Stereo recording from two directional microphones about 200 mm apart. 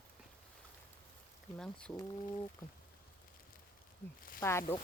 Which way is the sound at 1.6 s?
5° left (ahead or behind).